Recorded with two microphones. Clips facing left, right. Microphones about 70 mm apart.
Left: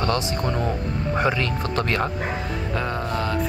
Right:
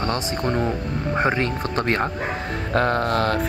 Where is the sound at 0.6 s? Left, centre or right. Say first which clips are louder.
Right 1 dB; right.